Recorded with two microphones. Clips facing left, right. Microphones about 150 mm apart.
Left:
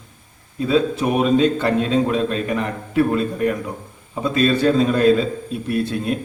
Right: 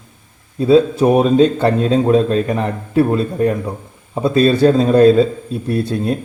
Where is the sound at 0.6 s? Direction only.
35° right (ahead or behind).